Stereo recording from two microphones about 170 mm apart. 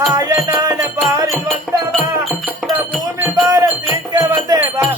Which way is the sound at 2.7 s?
10° right (ahead or behind).